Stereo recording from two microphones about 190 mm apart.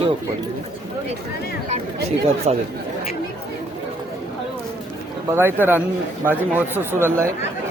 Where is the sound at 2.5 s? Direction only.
40° right (ahead or behind).